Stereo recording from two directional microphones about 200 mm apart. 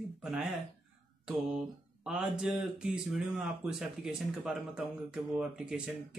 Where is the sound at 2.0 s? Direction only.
5° right (ahead or behind).